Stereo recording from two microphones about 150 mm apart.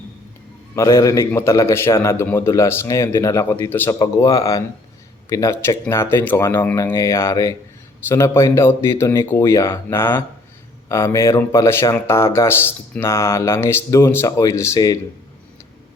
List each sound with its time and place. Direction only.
0.8 s a man's voice: 25° left (ahead or behind)